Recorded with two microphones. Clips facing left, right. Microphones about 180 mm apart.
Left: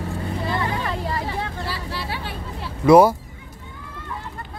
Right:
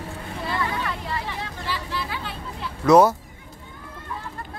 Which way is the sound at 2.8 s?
10° left (ahead or behind).